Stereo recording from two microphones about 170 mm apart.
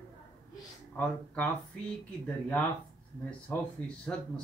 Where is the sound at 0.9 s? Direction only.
10° left (ahead or behind).